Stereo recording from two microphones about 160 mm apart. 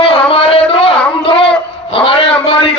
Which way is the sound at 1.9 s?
35° left (ahead or behind).